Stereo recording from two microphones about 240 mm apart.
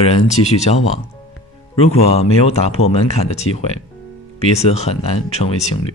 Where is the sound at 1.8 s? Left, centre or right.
Left.